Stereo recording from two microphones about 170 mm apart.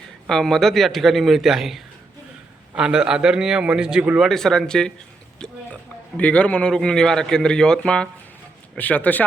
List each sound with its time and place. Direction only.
0.3 s a man's voice: centre (ahead or behind)